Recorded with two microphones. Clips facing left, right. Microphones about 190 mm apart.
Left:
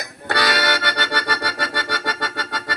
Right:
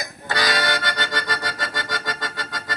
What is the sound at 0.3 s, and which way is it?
Music, 70° left (ahead or behind).